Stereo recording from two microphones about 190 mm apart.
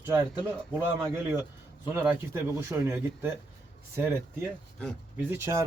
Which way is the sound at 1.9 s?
10° right (ahead or behind).